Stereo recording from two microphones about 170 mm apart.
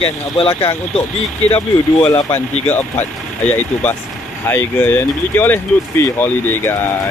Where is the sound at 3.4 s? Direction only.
10° left (ahead or behind).